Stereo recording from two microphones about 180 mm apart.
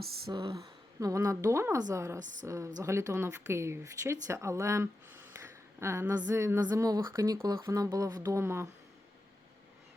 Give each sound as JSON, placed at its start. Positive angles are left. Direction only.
{"t": 0.3, "sound": "a woman's voice", "side_deg": -25}
{"t": 2.2, "sound": "a woman's voice", "side_deg": -45}
{"t": 2.5, "sound": "speech", "side_deg": -20}